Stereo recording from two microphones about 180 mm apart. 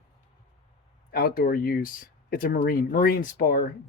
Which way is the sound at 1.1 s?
55° left (ahead or behind).